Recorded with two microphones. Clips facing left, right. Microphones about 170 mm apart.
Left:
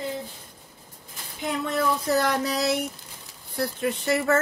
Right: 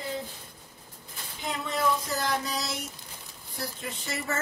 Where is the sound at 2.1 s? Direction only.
65° left (ahead or behind).